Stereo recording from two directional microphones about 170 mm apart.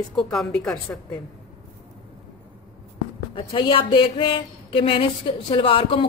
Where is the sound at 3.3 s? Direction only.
30° left (ahead or behind).